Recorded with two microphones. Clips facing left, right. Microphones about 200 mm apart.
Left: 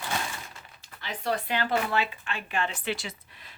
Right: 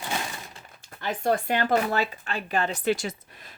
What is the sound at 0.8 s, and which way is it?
Speech, 50° right (ahead or behind).